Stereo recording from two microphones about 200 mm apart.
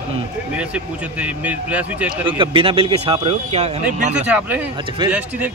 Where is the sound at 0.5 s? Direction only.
5° right (ahead or behind).